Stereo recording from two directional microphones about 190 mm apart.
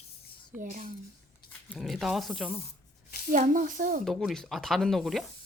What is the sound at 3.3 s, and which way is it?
Speech, 45° right (ahead or behind).